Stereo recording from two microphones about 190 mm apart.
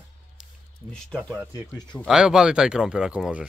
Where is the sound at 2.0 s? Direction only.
5° right (ahead or behind).